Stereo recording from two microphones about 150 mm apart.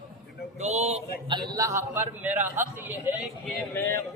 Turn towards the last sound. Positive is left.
turn(degrees=15)  # may be behind; listen again after turning